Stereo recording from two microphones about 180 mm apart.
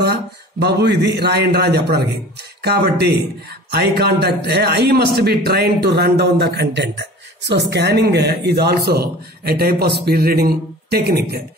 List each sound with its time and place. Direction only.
0.0 s a man's voice: 65° right (ahead or behind)